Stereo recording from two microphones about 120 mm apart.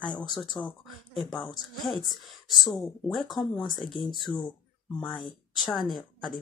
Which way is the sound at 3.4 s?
40° left (ahead or behind).